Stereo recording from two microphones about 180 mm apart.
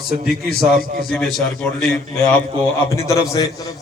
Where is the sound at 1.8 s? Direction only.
5° left (ahead or behind).